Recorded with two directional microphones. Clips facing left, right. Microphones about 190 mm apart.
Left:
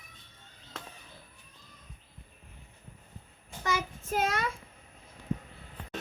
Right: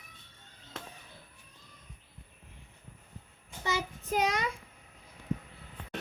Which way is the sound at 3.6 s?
20° right (ahead or behind).